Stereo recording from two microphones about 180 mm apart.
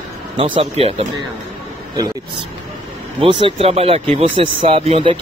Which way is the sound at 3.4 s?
35° right (ahead or behind).